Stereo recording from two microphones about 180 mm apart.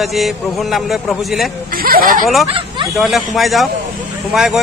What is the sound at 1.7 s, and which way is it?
Speech, 55° right (ahead or behind).